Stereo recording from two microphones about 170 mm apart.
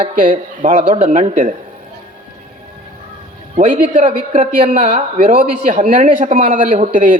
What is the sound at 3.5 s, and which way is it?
A man's voice, 40° right (ahead or behind).